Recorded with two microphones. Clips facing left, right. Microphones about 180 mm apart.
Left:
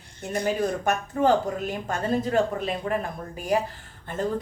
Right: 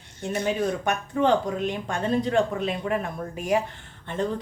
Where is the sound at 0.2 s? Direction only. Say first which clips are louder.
Even; 5° left (ahead or behind).